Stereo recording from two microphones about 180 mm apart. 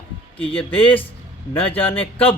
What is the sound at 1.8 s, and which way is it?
Speech, 30° left (ahead or behind).